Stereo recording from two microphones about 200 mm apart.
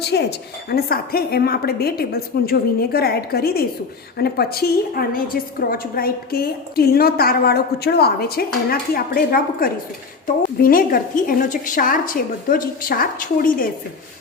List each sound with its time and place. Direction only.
0.0 s a woman's voice: 55° left (ahead or behind)